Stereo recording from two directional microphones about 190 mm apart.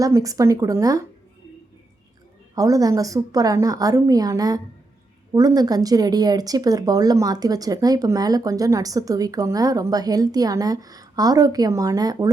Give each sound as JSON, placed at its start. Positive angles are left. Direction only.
{"t": 0.0, "sound": "speech", "side_deg": -20}
{"t": 2.6, "sound": "speech", "side_deg": -20}